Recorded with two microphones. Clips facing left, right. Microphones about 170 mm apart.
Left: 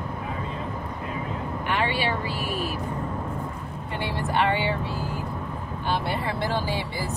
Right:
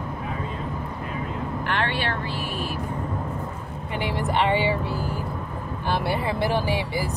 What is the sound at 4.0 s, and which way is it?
Speech, 15° right (ahead or behind).